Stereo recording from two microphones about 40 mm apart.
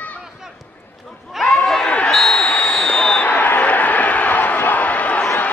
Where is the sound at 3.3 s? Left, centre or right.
Left.